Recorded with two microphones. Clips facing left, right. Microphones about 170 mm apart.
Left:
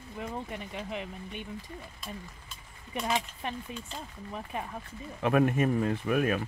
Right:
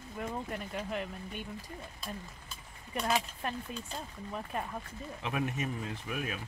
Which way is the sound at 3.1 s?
Centre (ahead or behind).